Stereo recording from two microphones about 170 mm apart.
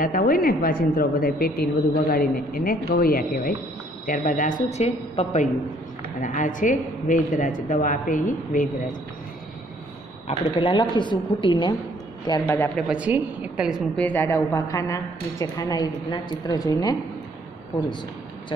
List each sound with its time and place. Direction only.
0.0 s a woman's voice: 55° left (ahead or behind)
10.2 s a woman's voice: 30° left (ahead or behind)
12.3 s a man's voice: 10° left (ahead or behind)
12.8 s a woman's voice: 10° right (ahead or behind)
13.9 s a woman's voice: 10° left (ahead or behind)